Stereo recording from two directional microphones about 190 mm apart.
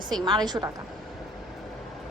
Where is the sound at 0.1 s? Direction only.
20° right (ahead or behind).